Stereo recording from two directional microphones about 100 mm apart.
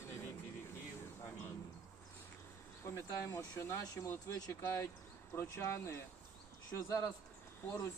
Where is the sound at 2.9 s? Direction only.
25° left (ahead or behind).